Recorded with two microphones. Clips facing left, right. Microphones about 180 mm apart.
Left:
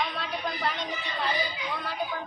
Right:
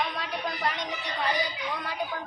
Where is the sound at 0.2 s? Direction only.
10° right (ahead or behind).